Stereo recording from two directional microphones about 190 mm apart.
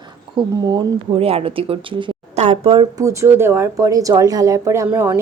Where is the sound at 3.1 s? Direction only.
15° right (ahead or behind).